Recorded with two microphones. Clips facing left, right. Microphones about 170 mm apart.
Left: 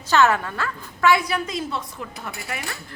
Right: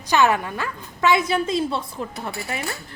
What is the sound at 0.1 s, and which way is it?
A woman's voice, 15° right (ahead or behind).